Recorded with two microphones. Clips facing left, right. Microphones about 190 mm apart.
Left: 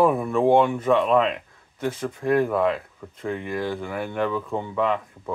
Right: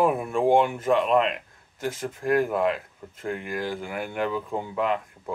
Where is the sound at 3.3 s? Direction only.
5° right (ahead or behind).